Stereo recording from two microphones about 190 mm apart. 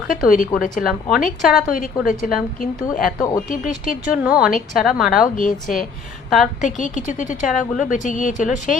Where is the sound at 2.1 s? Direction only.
45° left (ahead or behind).